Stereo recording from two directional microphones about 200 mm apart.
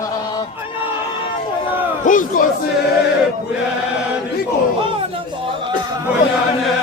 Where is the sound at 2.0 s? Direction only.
40° left (ahead or behind).